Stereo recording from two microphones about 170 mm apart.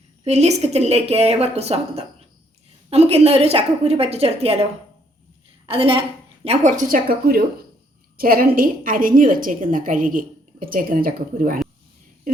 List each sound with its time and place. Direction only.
0.3 s speech: 40° right (ahead or behind)
5.6 s a woman's voice: 35° right (ahead or behind); by 11.6 s 55° right (ahead or behind)